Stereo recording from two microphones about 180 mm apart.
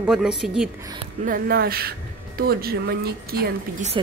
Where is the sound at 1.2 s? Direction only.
55° right (ahead or behind).